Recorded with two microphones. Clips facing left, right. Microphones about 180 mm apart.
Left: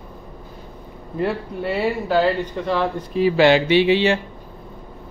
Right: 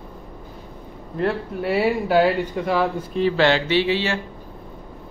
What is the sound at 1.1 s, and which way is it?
Speech, centre (ahead or behind).